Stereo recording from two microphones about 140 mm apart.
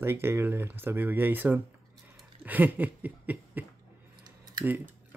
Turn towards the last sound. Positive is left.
turn(degrees=-15)  # may be behind; listen again after turning